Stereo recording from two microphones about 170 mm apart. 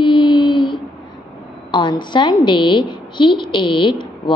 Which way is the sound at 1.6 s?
25° left (ahead or behind).